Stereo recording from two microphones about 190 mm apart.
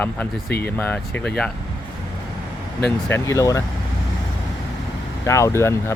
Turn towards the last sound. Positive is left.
turn(degrees=15)  # may be behind; listen again after turning